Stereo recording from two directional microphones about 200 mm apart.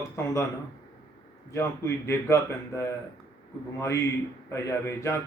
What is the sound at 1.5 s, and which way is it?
A man's voice, 15° left (ahead or behind).